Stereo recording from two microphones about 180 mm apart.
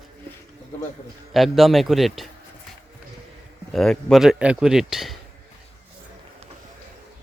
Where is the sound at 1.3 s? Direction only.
Centre (ahead or behind).